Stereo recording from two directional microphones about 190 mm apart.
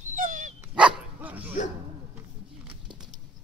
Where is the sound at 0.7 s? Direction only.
5° right (ahead or behind).